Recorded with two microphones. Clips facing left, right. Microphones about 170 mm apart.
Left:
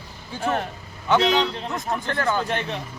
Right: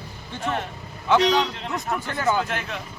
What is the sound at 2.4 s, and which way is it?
Speech, 35° left (ahead or behind).